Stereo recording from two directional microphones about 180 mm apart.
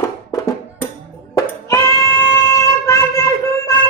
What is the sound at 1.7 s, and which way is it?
Child singing, 15° left (ahead or behind).